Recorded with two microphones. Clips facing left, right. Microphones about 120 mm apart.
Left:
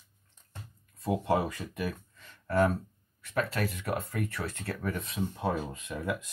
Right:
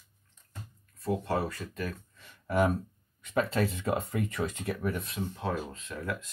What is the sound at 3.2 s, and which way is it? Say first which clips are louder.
Speech: right 3 dB; 20° right (ahead or behind).